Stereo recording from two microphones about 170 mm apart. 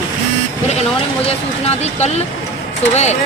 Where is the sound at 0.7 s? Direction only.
35° left (ahead or behind).